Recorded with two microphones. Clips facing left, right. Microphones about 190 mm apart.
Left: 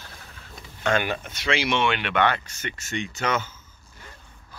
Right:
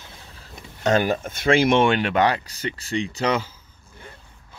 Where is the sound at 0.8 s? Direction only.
40° right (ahead or behind).